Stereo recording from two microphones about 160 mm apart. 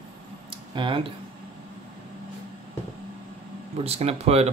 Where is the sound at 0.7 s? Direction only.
30° right (ahead or behind).